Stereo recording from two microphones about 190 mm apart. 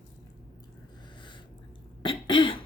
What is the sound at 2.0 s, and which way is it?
Cough, 25° left (ahead or behind).